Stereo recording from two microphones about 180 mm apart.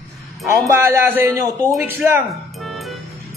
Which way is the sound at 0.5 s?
10° right (ahead or behind).